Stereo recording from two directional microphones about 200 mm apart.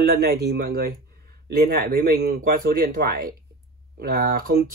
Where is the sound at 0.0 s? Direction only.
50° right (ahead or behind).